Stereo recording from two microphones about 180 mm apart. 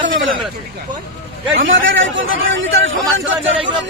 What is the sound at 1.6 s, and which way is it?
A man's voice, 90° right.